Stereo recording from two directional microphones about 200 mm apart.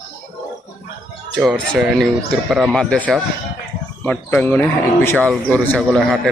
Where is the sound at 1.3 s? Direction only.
5° left (ahead or behind).